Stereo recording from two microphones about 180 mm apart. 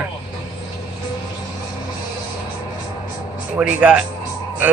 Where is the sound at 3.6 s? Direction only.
10° right (ahead or behind).